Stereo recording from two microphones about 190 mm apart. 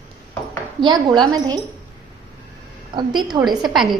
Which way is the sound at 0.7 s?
25° right (ahead or behind).